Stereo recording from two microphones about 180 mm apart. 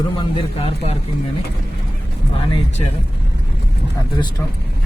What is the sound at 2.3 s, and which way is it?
Speech, 35° left (ahead or behind).